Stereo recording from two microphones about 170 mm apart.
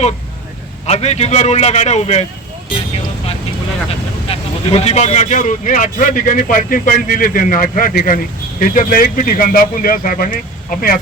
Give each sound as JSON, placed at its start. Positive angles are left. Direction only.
{"t": 0.9, "sound": "a man's voice", "side_deg": 40}
{"t": 4.3, "sound": "speech", "side_deg": 35}